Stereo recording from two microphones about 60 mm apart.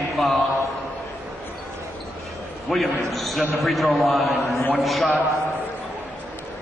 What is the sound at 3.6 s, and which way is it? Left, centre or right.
A man's voice, centre.